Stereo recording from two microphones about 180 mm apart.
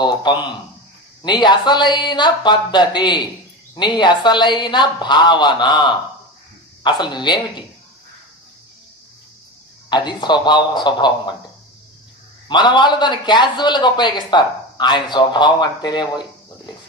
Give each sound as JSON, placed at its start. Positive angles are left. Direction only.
{"t": 0.0, "sound": "a man's voice", "side_deg": 25}
{"t": 9.8, "sound": "a man's voice", "side_deg": 25}
{"t": 12.4, "sound": "a man's voice", "side_deg": 25}